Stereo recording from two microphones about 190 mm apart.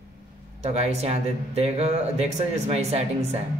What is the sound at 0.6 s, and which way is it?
Speech, 35° right (ahead or behind).